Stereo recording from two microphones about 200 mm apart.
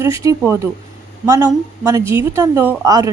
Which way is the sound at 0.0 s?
15° right (ahead or behind).